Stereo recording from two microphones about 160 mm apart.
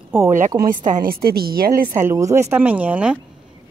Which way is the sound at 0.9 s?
65° right (ahead or behind).